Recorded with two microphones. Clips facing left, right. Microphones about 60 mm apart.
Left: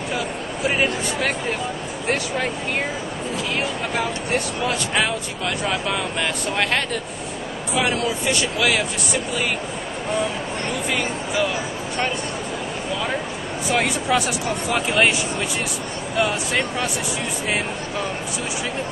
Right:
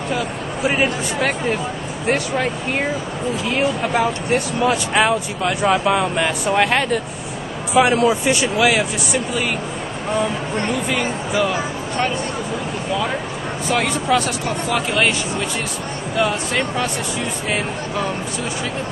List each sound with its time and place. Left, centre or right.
0.7 s speech: centre
4.6 s speech: centre
10.9 s speech: centre
13.7 s speech: centre
16.2 s speech: centre